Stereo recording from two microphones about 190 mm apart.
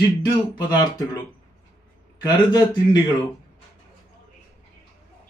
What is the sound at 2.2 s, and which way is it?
Speech, 20° left (ahead or behind).